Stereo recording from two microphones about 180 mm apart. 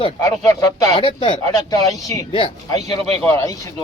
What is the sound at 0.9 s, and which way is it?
Speech, 30° left (ahead or behind).